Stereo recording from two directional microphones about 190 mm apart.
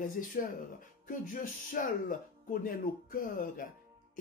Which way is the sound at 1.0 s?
45° left (ahead or behind).